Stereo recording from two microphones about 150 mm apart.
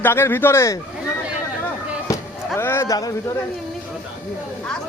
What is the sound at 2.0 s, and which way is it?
Music, 20° left (ahead or behind).